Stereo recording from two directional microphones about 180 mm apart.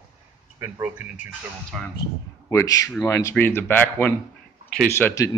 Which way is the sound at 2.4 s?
15° left (ahead or behind).